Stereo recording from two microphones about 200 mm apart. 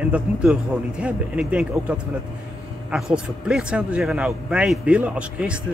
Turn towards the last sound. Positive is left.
turn(degrees=-5)  # may be behind; listen again after turning